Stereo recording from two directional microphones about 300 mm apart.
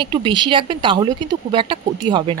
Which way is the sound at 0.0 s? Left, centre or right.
Centre.